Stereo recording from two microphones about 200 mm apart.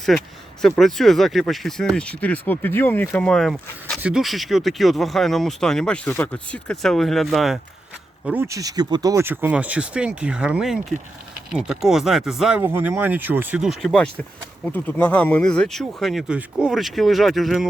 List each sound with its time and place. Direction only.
0.1 s speech: centre (ahead or behind)